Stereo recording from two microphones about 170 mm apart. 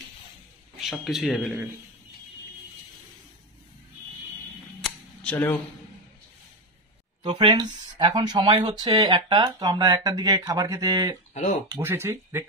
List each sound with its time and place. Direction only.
0.7 s speech: centre (ahead or behind)
4.8 s camera: 10° left (ahead or behind)
7.2 s speech: 25° right (ahead or behind)
11.3 s speech: 45° left (ahead or behind)
11.7 s speech: 15° right (ahead or behind)